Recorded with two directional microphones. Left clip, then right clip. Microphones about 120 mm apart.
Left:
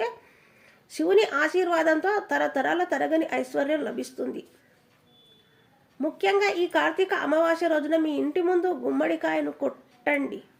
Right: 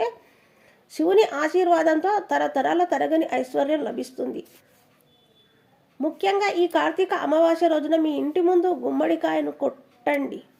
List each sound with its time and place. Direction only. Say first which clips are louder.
0.9 s speech: right 3 dB; 25° right (ahead or behind)
6.0 s speech: right 1 dB; 25° right (ahead or behind)